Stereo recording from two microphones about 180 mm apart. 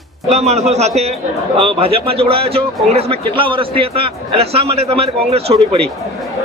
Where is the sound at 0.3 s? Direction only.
35° right (ahead or behind).